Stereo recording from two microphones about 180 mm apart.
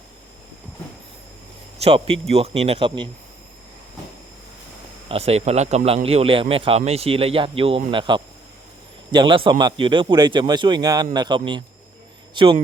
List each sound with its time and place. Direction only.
1.8 s speech: 30° right (ahead or behind)
5.0 s speech: 35° right (ahead or behind)